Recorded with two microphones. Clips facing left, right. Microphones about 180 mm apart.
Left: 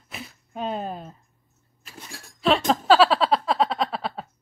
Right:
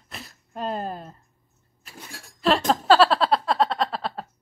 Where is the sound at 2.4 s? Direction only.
Centre (ahead or behind).